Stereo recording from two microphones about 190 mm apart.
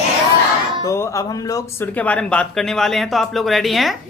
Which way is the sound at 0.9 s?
15° left (ahead or behind).